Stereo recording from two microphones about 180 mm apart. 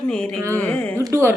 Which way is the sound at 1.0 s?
15° right (ahead or behind).